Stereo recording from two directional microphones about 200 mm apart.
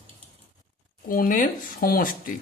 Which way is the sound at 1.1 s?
45° left (ahead or behind).